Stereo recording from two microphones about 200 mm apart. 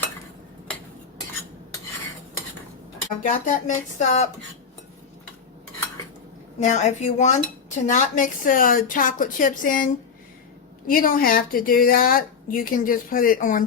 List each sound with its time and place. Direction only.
3.2 s speech: 40° left (ahead or behind)
6.6 s speech: 35° left (ahead or behind)